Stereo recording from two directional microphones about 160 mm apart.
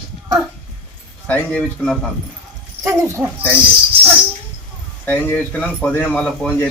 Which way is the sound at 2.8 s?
15° right (ahead or behind).